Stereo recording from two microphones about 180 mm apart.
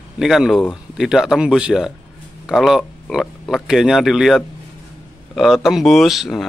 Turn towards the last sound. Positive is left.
turn(degrees=0)  # may be behind; listen again after turning